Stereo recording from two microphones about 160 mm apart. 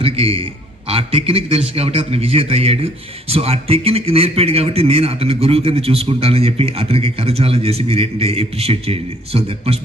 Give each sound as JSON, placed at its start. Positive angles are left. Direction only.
{"t": 0.0, "sound": "speech", "side_deg": -40}